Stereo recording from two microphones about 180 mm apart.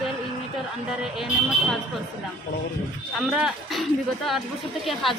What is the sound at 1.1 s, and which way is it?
Speech, centre (ahead or behind).